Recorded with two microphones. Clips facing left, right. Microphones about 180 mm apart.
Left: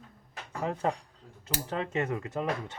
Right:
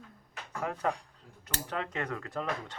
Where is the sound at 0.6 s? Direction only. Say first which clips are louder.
Left 2 dB; 25° left (ahead or behind).